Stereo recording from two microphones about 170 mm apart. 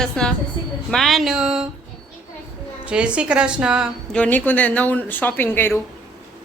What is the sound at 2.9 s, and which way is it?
A woman's voice, 5° right (ahead or behind).